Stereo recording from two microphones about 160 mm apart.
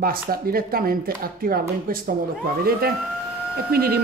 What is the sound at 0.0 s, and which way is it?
Speech, 65° right (ahead or behind).